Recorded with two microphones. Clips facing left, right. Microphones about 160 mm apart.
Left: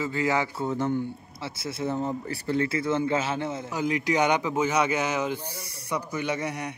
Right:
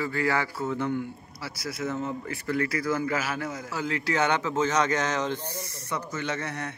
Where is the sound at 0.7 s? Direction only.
40° left (ahead or behind).